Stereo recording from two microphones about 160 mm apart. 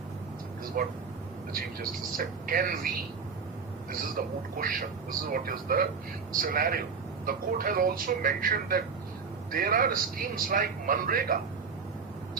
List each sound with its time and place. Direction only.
0.8 s a man's voice: 60° right (ahead or behind)
4.0 s a man's voice: 60° right (ahead or behind)